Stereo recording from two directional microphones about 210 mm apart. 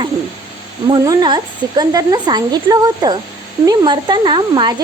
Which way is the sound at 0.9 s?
20° right (ahead or behind).